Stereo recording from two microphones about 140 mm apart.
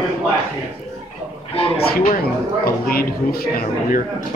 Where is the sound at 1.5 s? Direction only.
40° left (ahead or behind).